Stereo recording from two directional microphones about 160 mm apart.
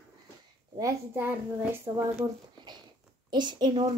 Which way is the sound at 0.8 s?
15° right (ahead or behind).